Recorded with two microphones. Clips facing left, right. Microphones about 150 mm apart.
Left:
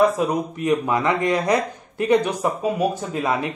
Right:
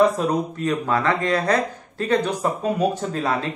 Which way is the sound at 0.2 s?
10° left (ahead or behind).